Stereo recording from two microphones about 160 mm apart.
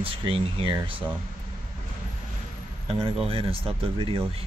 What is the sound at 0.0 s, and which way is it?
Speech, 35° right (ahead or behind).